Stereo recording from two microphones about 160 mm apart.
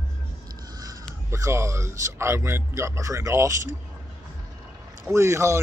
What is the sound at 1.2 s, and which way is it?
Speech, 20° right (ahead or behind).